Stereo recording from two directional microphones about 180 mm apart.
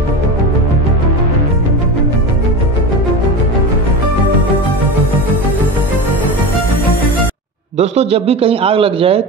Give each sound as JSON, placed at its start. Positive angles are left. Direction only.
{"t": 7.7, "sound": "a man's voice", "side_deg": -35}